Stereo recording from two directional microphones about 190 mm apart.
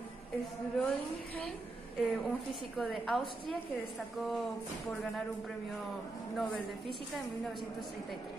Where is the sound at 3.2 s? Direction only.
25° left (ahead or behind).